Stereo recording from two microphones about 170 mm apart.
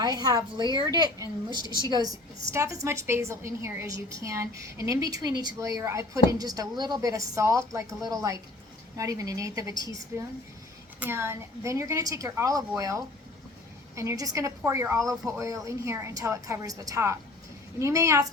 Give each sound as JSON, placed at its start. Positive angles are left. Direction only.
{"t": 0.0, "sound": "a woman's voice", "side_deg": -25}
{"t": 11.0, "sound": "a woman's voice", "side_deg": -15}